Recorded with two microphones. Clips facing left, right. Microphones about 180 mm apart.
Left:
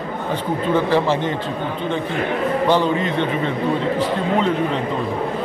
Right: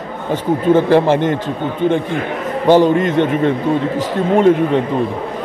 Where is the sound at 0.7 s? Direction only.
55° right (ahead or behind).